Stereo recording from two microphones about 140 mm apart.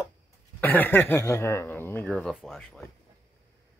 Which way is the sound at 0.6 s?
15° left (ahead or behind).